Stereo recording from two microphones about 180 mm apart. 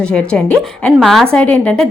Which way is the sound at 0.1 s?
5° left (ahead or behind).